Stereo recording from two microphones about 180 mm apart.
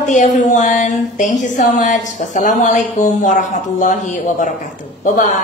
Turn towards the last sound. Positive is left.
turn(degrees=45)  # may be behind; listen again after turning